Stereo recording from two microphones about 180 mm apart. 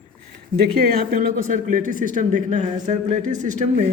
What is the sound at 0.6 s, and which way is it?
Speech, 60° right (ahead or behind).